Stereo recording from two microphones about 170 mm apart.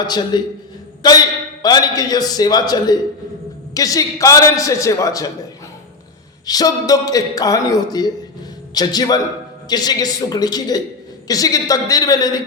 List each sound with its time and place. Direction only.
0.0 s speech: 25° left (ahead or behind)
6.4 s speech: 20° left (ahead or behind)